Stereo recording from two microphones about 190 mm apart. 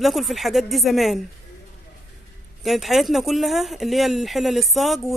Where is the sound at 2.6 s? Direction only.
Centre (ahead or behind).